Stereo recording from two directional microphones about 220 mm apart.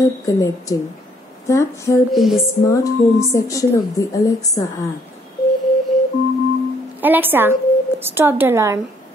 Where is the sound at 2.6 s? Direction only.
15° left (ahead or behind).